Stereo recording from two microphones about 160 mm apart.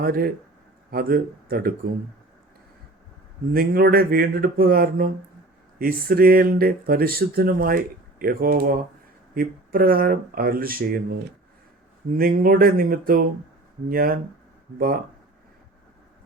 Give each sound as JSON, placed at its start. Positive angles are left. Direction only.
{"t": 0.0, "sound": "speech", "side_deg": -70}
{"t": 3.5, "sound": "speech", "side_deg": -70}
{"t": 12.1, "sound": "speech", "side_deg": -65}